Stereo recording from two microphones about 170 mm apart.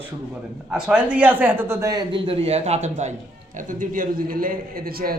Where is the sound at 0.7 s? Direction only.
5° right (ahead or behind).